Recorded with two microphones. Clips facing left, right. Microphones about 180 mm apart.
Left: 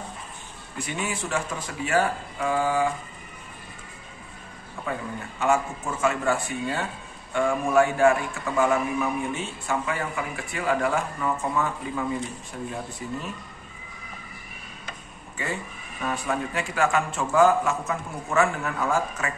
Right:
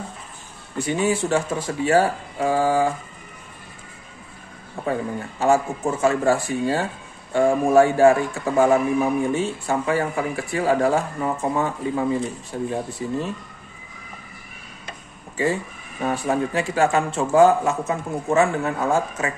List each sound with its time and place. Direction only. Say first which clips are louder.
0.7 s a man's voice: right 9 dB; 30° right (ahead or behind)
4.8 s a sound: right 6 dB; 30° right (ahead or behind)
5.4 s a man's voice: right 5 dB; 30° right (ahead or behind)
15.3 s speech: right 9 dB; 30° right (ahead or behind)